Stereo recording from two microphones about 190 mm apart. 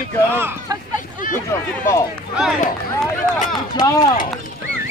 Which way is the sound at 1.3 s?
15° left (ahead or behind).